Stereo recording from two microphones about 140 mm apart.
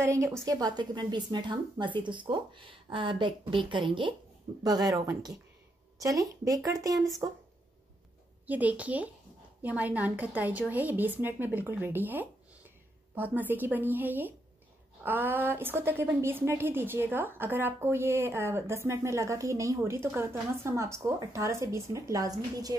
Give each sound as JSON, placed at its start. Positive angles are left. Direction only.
{"t": 0.0, "sound": "a woman's voice", "side_deg": -20}
{"t": 8.5, "sound": "a woman's voice", "side_deg": -10}